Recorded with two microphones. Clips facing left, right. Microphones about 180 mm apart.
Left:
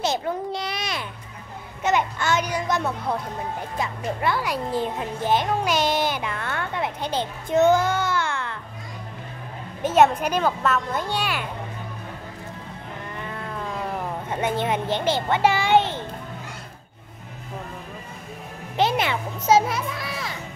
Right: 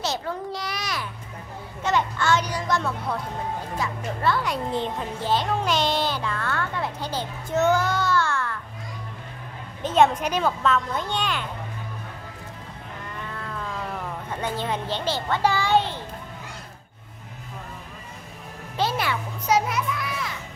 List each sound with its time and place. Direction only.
0.5 s a child's voice: 25° left (ahead or behind)
9.8 s speech: 5° left (ahead or behind)
13.3 s moo: 20° left (ahead or behind)
14.3 s a child's voice: 20° left (ahead or behind)
15.1 s a sound: 15° left (ahead or behind)
18.8 s music: 20° left (ahead or behind)